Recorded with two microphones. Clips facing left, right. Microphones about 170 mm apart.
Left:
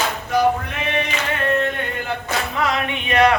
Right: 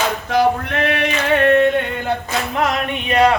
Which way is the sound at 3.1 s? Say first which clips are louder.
Right 1 dB; 30° right (ahead or behind).